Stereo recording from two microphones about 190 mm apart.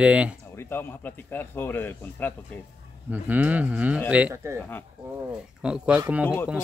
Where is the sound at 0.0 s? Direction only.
5° right (ahead or behind).